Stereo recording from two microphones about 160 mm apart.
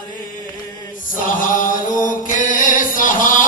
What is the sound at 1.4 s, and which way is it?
Chant, 55° left (ahead or behind).